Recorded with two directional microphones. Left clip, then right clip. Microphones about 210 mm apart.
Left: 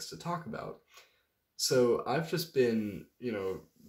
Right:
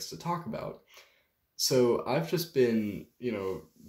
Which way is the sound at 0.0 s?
5° left (ahead or behind).